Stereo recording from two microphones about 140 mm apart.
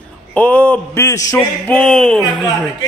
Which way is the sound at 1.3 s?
10° left (ahead or behind).